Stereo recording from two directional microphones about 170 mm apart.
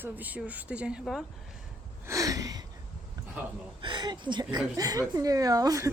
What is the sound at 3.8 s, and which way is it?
A woman's voice, 25° right (ahead or behind).